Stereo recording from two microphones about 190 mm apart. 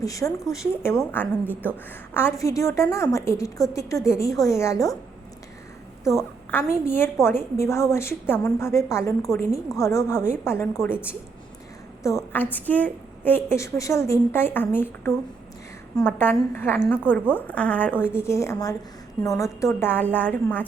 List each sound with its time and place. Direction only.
0.0 s a woman's voice: 15° left (ahead or behind)
6.1 s a woman's voice: 15° left (ahead or behind)
10.9 s a woman's voice: 5° right (ahead or behind)
12.0 s a woman's voice: 10° left (ahead or behind)